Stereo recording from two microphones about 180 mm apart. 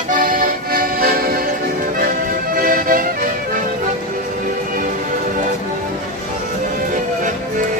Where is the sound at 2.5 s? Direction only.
50° right (ahead or behind).